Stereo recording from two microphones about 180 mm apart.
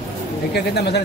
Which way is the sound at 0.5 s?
65° left (ahead or behind).